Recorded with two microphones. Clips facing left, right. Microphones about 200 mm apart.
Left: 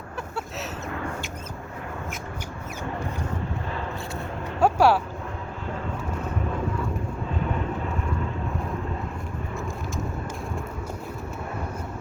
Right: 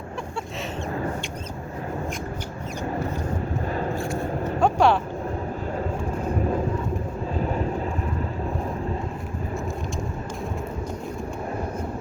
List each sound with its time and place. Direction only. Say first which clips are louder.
3.7 s a sound: right 5 dB; 40° right (ahead or behind)
4.6 s vehicle: even; 5° left (ahead or behind)
7.3 s vehicle: right 3 dB; 35° right (ahead or behind)